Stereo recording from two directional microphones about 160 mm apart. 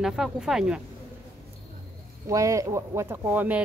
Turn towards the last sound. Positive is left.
turn(degrees=-10)  # may be behind; listen again after turning